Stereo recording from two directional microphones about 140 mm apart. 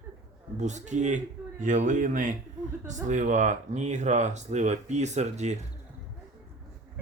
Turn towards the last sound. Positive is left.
turn(degrees=-55)  # may be behind; listen again after turning